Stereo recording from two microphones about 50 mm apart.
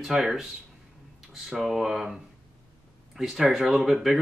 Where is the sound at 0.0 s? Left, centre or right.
Centre.